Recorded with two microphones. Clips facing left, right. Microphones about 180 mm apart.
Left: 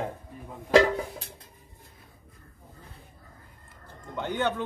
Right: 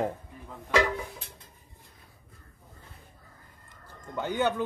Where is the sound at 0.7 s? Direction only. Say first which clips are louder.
Left 6 dB; 35° left (ahead or behind).